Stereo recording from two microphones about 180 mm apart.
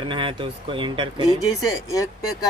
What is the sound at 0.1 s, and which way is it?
Speech, 30° right (ahead or behind).